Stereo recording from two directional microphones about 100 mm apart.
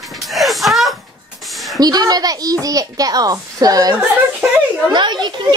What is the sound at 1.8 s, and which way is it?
A child's voice, 40° right (ahead or behind).